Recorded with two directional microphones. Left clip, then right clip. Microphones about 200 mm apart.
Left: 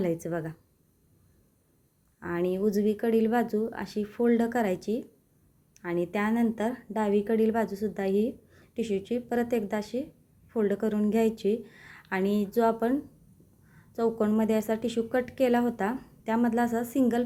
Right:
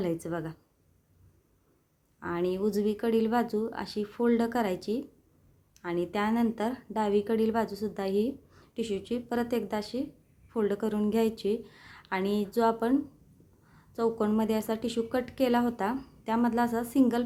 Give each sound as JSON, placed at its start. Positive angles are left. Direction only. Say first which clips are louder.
{"t": 0.0, "sound": "a woman's voice", "louder": "left 2 dB", "side_deg": 10}
{"t": 2.1, "sound": "a woman's voice", "louder": "left 1 dB", "side_deg": 10}